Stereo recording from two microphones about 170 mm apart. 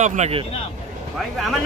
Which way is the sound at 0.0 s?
40° right (ahead or behind).